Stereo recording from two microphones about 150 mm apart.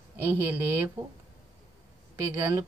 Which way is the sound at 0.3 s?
15° right (ahead or behind).